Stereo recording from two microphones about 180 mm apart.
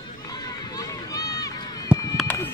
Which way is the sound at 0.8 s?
20° left (ahead or behind).